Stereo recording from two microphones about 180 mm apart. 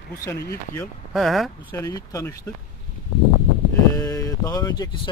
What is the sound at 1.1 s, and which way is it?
Speech, centre (ahead or behind).